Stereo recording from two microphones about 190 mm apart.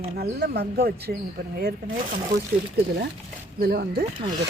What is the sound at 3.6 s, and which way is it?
Speech, 55° right (ahead or behind).